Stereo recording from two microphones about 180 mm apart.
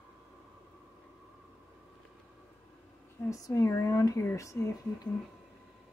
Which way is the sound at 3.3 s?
15° left (ahead or behind).